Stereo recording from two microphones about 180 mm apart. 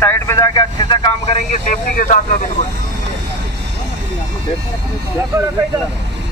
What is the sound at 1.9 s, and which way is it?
Speech, 45° left (ahead or behind).